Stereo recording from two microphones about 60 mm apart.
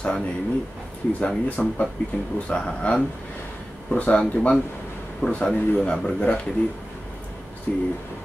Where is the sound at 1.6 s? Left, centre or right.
Centre.